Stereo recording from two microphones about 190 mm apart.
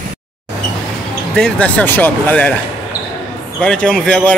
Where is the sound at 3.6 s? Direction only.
5° left (ahead or behind).